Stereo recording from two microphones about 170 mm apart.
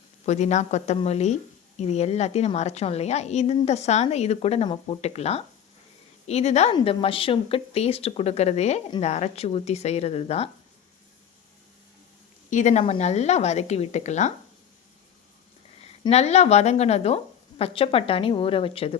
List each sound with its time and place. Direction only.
0.3 s a woman's voice: 45° left (ahead or behind)
12.5 s a woman's voice: 45° left (ahead or behind)
15.9 s a woman's voice: 40° left (ahead or behind)